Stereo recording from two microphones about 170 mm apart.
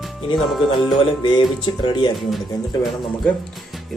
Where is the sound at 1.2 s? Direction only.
25° left (ahead or behind).